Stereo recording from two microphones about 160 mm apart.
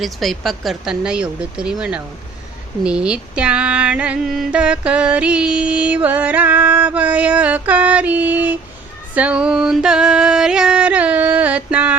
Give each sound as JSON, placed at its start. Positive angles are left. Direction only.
{"t": 0.0, "sound": "speech", "side_deg": 0}
{"t": 2.8, "sound": "a sound", "side_deg": -5}
{"t": 9.1, "sound": "music", "side_deg": -5}